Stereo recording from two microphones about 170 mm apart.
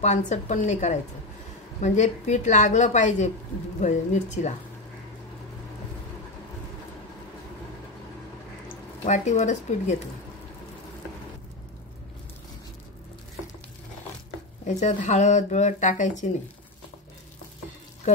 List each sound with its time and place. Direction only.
0.0 s speech: 45° left (ahead or behind)
9.0 s speech: 45° left (ahead or behind)
14.7 s speech: 45° left (ahead or behind)